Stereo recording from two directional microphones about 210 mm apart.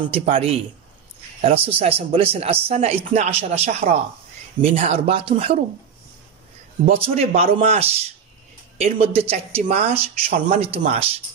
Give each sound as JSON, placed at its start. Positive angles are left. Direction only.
{"t": 0.1, "sound": "speech", "side_deg": -30}
{"t": 6.9, "sound": "speech", "side_deg": -30}